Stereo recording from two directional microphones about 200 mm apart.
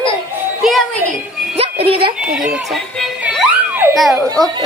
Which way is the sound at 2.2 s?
5° right (ahead or behind).